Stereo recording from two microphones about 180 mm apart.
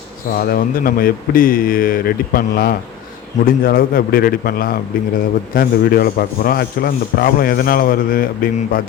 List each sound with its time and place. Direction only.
0.3 s a man's voice: 50° left (ahead or behind)